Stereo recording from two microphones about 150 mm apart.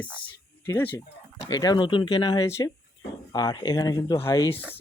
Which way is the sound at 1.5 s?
30° left (ahead or behind).